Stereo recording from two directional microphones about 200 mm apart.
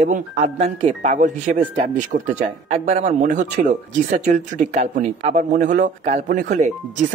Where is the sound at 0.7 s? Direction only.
30° right (ahead or behind).